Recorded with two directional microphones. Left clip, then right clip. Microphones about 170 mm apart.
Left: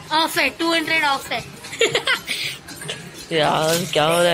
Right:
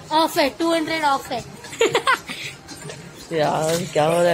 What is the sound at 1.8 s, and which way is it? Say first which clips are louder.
Giggle: right 1 dB; 55° right (ahead or behind).